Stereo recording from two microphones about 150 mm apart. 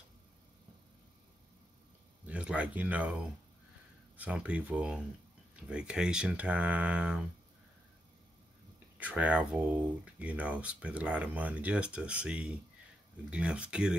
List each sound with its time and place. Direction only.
2.2 s speech: 10° right (ahead or behind)
8.7 s speech: 10° right (ahead or behind)